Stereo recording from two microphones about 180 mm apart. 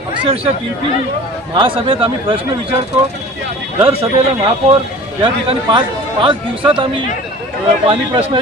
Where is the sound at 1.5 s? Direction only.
30° right (ahead or behind).